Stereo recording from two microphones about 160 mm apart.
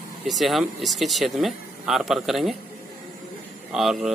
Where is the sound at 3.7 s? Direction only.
5° right (ahead or behind).